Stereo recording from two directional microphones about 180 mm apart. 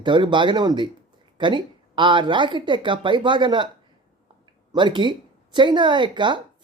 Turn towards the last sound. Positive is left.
turn(degrees=-25)  # may be behind; listen again after turning